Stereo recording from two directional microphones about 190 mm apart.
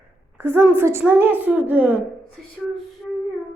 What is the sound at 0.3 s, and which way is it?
Speech, 10° right (ahead or behind).